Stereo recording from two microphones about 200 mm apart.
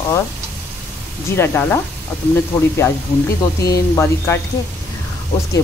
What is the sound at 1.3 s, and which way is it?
Stir, 10° left (ahead or behind).